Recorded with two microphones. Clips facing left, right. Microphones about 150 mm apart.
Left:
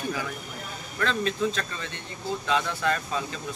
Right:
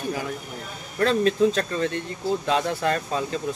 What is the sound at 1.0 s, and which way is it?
Speech, 40° right (ahead or behind).